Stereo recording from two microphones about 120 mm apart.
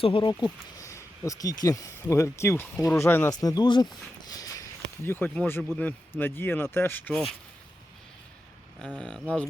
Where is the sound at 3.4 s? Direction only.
35° left (ahead or behind).